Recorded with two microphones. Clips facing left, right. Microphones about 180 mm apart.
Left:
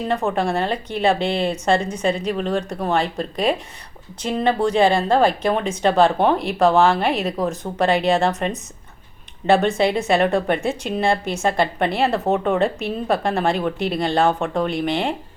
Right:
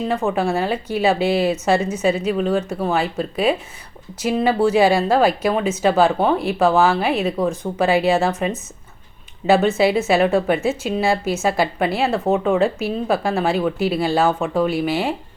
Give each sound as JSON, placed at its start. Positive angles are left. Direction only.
{"t": 0.1, "sound": "speech", "side_deg": 0}